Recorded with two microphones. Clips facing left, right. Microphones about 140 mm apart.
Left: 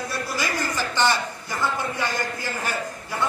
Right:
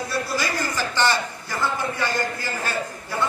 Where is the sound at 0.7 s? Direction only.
15° left (ahead or behind).